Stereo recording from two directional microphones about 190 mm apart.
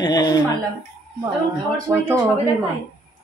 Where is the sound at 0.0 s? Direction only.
20° left (ahead or behind).